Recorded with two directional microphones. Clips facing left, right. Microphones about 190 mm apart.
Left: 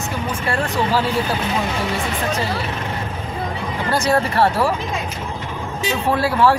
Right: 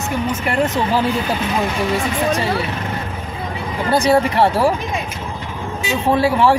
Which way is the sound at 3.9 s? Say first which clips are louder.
Right 4 dB; 15° right (ahead or behind).